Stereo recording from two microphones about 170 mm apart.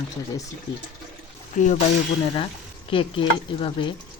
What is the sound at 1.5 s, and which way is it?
Speech, 45° left (ahead or behind).